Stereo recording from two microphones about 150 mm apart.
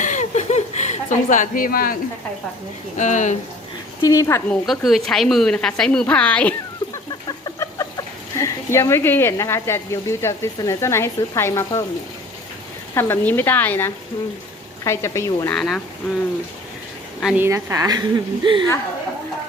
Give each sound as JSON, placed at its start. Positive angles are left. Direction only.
{"t": 0.0, "sound": "chuckle", "side_deg": 55}
{"t": 3.0, "sound": "speech", "side_deg": 55}
{"t": 4.0, "sound": "a woman's voice", "side_deg": 20}
{"t": 4.6, "sound": "a woman's voice", "side_deg": 0}
{"t": 7.3, "sound": "speech", "side_deg": 25}
{"t": 12.9, "sound": "a woman's voice", "side_deg": 15}
{"t": 15.5, "sound": "a woman's voice", "side_deg": 5}
{"t": 17.3, "sound": "speech", "side_deg": -15}